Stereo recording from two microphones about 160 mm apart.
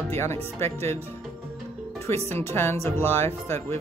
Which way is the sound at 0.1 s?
15° left (ahead or behind).